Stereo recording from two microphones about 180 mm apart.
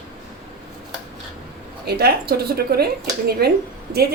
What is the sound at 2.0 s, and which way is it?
A woman's voice, 60° right (ahead or behind).